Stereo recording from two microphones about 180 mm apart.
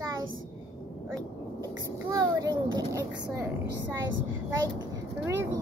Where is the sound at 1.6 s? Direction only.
20° right (ahead or behind).